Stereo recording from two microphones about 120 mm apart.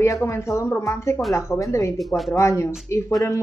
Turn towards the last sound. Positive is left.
turn(degrees=25)  # may be behind; listen again after turning